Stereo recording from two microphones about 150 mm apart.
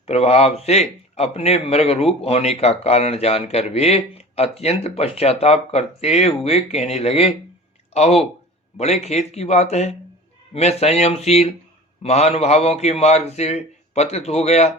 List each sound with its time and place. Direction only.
0.1 s a man's voice: 45° left (ahead or behind)